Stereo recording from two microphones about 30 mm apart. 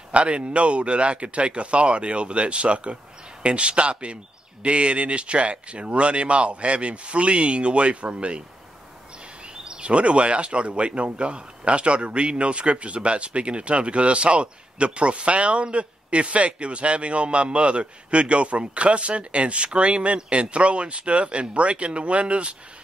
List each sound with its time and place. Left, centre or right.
0.1 s a man's voice: right
9.8 s a man's voice: right